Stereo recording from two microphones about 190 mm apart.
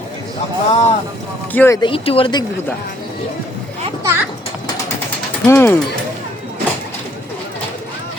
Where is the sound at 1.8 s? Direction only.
25° left (ahead or behind).